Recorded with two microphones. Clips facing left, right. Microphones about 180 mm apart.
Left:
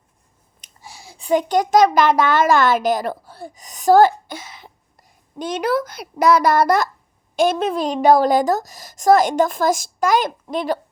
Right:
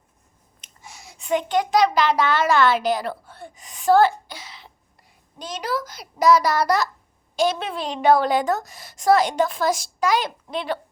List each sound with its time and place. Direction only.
0.6 s a child's voice: 35° left (ahead or behind)
5.5 s a child's voice: 60° left (ahead or behind)